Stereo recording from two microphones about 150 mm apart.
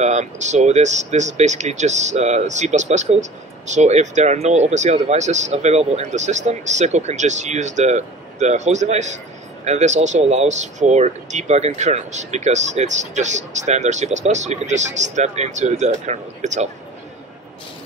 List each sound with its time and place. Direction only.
0.0 s speech: 50° right (ahead or behind)